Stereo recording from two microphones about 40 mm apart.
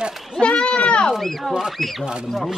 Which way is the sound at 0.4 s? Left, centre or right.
Left.